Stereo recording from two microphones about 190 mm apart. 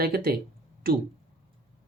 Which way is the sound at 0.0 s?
50° right (ahead or behind).